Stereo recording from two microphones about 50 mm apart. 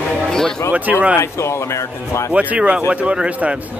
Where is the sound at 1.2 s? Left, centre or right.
Left.